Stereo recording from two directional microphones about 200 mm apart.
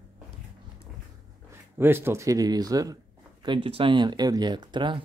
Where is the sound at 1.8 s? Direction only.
10° right (ahead or behind).